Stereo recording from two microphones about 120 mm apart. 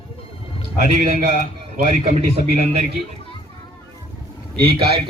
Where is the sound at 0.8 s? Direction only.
90° right.